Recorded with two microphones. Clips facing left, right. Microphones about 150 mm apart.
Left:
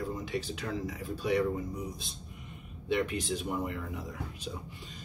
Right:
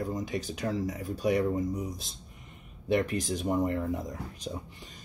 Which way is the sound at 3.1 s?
40° right (ahead or behind).